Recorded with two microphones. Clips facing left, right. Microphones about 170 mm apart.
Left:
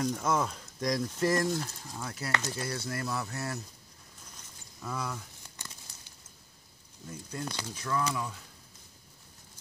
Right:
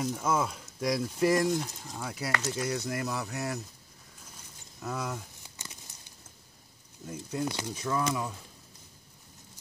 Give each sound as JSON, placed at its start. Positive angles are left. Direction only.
{"t": 0.0, "sound": "speech", "side_deg": -5}
{"t": 4.8, "sound": "a sound", "side_deg": -20}
{"t": 7.1, "sound": "speech", "side_deg": -15}